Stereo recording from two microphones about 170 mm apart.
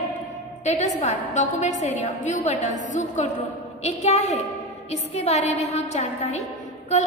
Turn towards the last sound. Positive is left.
turn(degrees=40)  # may be behind; listen again after turning